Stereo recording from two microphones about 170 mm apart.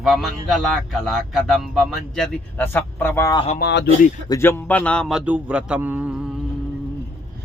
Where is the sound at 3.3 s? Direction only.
35° left (ahead or behind).